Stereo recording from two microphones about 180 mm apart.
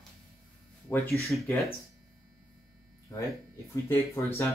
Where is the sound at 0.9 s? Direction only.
10° left (ahead or behind).